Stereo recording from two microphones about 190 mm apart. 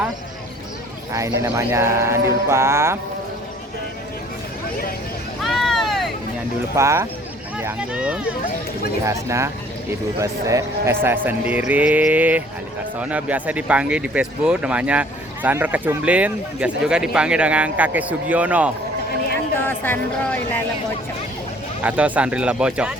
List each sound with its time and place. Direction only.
1.4 s speech: 15° right (ahead or behind)
5.4 s a sound: centre (ahead or behind)
6.7 s speech: 15° right (ahead or behind)
19.6 s speech: 10° left (ahead or behind)
21.8 s speech: 5° right (ahead or behind)